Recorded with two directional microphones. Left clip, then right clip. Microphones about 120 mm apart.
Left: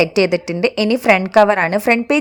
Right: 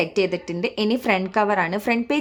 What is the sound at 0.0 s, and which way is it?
A woman's voice, 60° left (ahead or behind).